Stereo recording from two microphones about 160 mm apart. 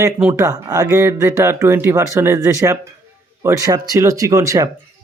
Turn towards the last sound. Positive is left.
turn(degrees=-20)  # may be behind; listen again after turning